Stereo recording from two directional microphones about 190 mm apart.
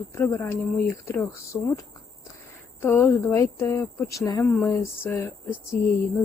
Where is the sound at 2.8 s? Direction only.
10° left (ahead or behind).